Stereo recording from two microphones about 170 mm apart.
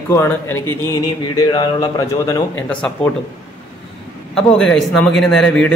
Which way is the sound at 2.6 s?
10° left (ahead or behind).